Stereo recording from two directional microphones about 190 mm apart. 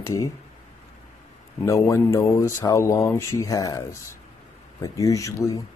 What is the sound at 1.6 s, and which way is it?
Speech, 15° left (ahead or behind).